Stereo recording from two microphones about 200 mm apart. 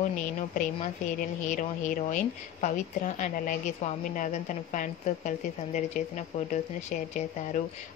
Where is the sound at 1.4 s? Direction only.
40° left (ahead or behind).